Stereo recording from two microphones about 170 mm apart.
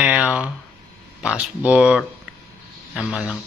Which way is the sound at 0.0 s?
5° right (ahead or behind).